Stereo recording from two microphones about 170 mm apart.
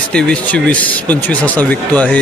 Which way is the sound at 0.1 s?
5° left (ahead or behind).